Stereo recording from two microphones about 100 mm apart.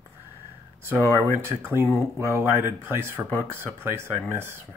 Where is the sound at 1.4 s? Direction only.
25° right (ahead or behind).